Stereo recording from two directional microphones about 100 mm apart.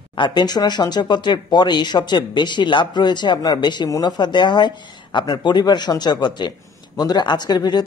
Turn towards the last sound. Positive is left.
turn(degrees=45)  # may be behind; listen again after turning